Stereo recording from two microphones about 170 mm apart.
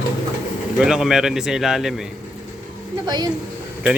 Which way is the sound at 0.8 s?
Centre (ahead or behind).